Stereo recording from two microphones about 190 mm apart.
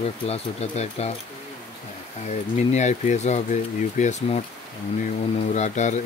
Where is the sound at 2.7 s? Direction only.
40° left (ahead or behind).